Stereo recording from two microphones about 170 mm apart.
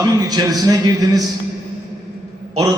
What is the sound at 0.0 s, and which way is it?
A man's voice, 20° right (ahead or behind).